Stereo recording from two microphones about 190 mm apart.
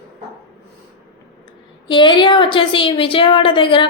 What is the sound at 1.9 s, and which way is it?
A woman's voice, 25° left (ahead or behind).